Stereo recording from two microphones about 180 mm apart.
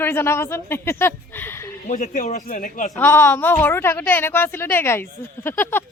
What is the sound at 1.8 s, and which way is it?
A man's voice, 40° left (ahead or behind).